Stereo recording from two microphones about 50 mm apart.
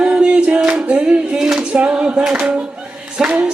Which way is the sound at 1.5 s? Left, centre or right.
Right.